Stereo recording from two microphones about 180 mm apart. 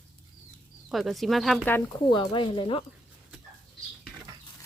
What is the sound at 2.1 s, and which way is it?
Speech, 25° left (ahead or behind).